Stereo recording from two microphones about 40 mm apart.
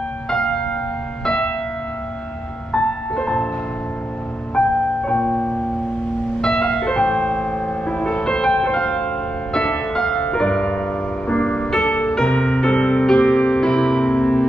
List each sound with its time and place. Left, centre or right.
0.3 s music: left
2.7 s music: left
4.6 s music: left
5.2 s music: left
6.4 s music: centre